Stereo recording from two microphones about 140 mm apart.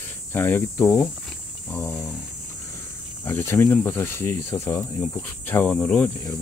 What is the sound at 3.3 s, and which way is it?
Speech, 15° left (ahead or behind).